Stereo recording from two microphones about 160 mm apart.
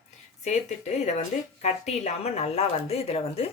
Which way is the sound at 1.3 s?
55° left (ahead or behind).